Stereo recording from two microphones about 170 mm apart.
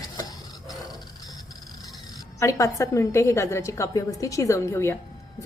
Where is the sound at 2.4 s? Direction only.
20° left (ahead or behind).